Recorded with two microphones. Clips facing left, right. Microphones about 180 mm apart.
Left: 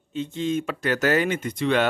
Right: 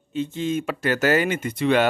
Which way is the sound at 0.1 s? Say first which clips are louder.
Right 1 dB; 5° right (ahead or behind).